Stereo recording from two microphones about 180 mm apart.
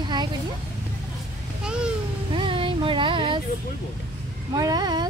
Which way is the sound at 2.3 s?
30° right (ahead or behind).